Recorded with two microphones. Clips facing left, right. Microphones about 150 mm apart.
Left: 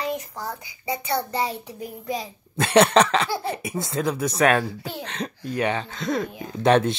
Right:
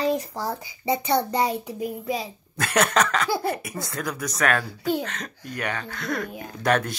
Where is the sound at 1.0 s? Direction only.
20° right (ahead or behind).